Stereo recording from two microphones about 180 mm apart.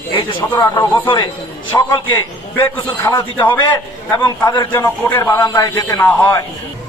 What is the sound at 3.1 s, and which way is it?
Speech, 25° left (ahead or behind).